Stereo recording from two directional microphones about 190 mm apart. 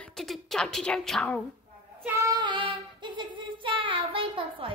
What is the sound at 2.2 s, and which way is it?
Child singing, 25° right (ahead or behind).